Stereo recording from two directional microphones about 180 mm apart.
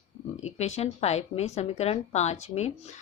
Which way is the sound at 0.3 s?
40° left (ahead or behind).